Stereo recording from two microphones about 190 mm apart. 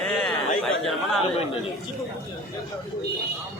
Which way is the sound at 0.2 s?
Centre (ahead or behind).